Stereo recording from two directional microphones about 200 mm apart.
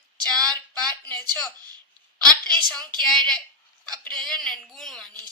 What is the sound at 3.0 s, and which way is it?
Speech, 5° left (ahead or behind).